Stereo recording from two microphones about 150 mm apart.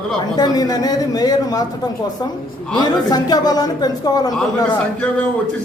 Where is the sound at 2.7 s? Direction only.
25° left (ahead or behind).